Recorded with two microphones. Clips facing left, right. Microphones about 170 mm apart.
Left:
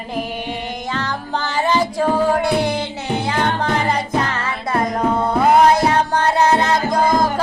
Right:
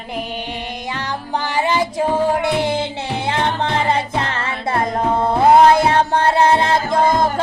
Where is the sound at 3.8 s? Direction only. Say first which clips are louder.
Even; 25° right (ahead or behind).